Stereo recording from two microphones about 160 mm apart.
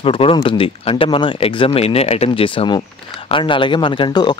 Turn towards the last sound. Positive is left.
turn(degrees=30)  # may be behind; listen again after turning